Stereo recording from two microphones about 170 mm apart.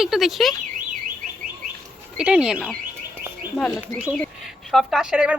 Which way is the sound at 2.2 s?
5° right (ahead or behind).